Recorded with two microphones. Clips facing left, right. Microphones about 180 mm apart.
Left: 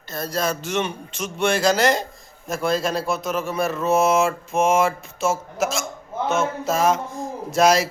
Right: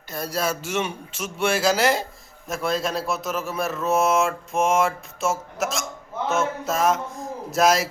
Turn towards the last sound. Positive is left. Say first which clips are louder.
# left 2 dB
turn(degrees=0)  # may be behind; listen again after turning